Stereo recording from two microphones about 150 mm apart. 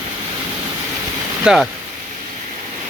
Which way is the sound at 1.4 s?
5° right (ahead or behind).